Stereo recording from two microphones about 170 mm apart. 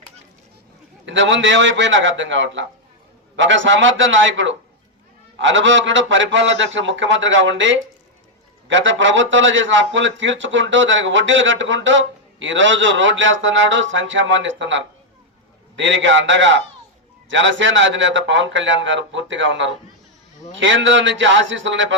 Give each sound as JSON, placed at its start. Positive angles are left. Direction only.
{"t": 1.0, "sound": "a man's voice", "side_deg": -90}